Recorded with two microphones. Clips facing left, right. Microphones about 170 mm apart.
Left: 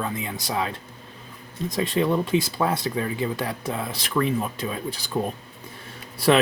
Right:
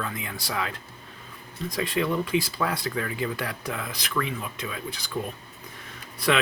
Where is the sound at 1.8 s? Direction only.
25° left (ahead or behind).